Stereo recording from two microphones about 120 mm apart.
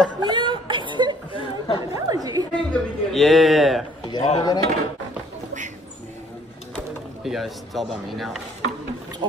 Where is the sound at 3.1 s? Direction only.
Centre (ahead or behind).